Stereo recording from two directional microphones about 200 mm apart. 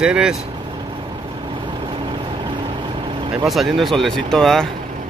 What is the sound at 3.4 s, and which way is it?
Speech, centre (ahead or behind).